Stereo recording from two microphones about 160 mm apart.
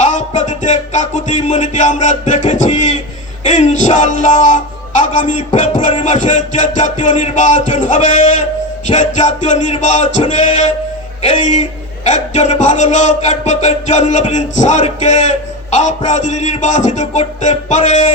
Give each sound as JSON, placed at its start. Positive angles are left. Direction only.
{"t": 0.0, "sound": "music", "side_deg": 50}